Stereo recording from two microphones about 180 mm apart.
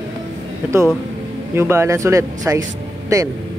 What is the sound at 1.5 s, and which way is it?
Speech, 15° right (ahead or behind).